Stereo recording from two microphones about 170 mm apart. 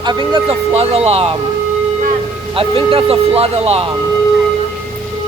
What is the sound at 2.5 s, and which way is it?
Speech, 30° right (ahead or behind).